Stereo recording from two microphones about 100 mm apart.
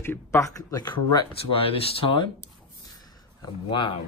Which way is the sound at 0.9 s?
65° left (ahead or behind).